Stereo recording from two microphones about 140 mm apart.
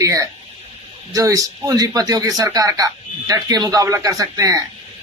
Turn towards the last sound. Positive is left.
turn(degrees=-25)  # may be behind; listen again after turning